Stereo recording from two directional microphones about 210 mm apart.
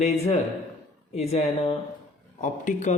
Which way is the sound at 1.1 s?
30° left (ahead or behind).